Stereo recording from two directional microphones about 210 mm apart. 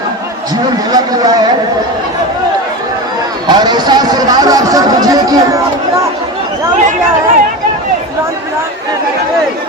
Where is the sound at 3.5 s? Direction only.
20° right (ahead or behind).